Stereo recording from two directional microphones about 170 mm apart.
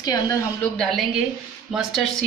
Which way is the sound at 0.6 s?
5° left (ahead or behind).